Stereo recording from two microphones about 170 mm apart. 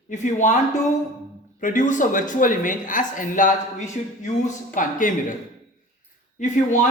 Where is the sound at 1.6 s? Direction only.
50° left (ahead or behind).